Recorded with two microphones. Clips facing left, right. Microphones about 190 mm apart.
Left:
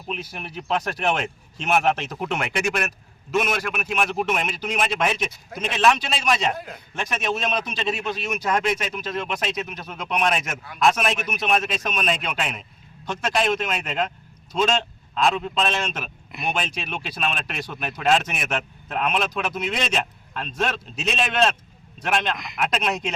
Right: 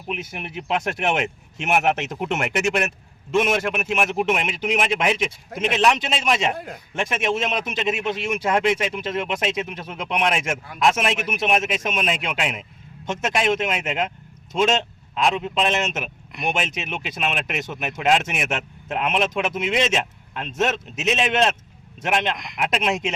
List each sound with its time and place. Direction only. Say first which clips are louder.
0.1 s speech: right 2 dB; 20° right (ahead or behind)